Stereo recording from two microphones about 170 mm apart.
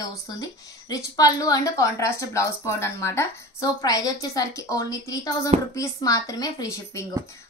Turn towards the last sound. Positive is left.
turn(degrees=20)  # may be behind; listen again after turning